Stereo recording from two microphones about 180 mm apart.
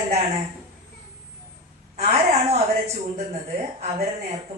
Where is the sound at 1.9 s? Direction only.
35° right (ahead or behind).